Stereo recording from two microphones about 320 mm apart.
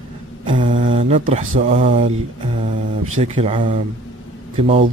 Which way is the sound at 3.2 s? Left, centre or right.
Centre.